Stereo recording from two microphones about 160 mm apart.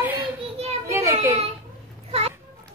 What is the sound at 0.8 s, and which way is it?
Children playing, 20° right (ahead or behind).